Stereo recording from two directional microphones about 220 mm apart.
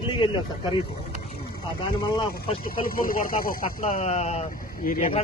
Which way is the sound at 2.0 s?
20° left (ahead or behind).